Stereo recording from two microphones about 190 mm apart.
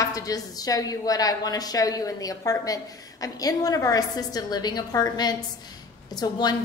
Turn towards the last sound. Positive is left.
turn(degrees=20)  # may be behind; listen again after turning